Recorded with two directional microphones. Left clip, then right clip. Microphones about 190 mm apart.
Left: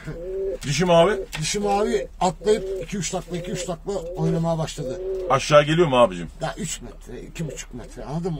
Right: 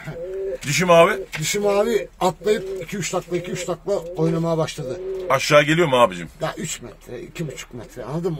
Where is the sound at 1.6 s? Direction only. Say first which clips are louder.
Right 3 dB; 35° right (ahead or behind).